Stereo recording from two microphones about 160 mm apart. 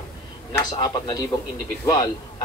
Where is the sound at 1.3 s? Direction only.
30° left (ahead or behind).